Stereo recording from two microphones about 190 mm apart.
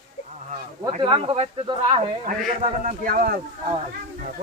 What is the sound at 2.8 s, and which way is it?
Speech, 45° right (ahead or behind).